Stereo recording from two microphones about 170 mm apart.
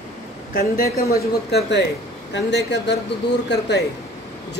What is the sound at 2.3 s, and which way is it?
Speech, 90° left.